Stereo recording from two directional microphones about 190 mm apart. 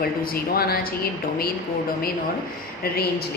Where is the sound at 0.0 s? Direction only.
50° left (ahead or behind).